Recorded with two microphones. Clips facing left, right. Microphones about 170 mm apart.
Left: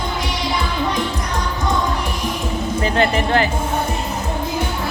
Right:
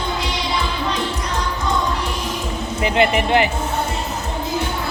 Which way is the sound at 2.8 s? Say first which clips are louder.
Right 1 dB; 15° right (ahead or behind).